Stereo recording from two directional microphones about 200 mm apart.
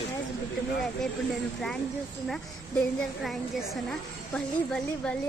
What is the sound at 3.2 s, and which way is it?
A woman's voice, centre (ahead or behind).